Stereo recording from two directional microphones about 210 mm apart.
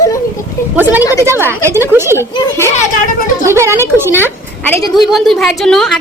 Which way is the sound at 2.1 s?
10° left (ahead or behind).